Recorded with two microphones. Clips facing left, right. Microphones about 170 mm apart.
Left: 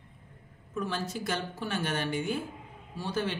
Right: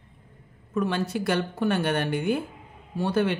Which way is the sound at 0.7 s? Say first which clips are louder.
Right 7 dB; 65° right (ahead or behind).